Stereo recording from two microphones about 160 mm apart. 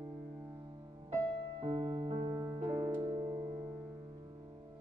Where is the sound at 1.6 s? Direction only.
30° right (ahead or behind).